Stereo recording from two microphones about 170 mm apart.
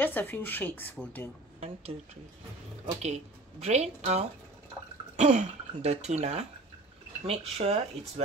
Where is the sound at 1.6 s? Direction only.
35° right (ahead or behind).